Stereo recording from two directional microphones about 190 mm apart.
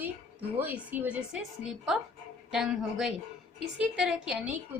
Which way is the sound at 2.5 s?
5° right (ahead or behind).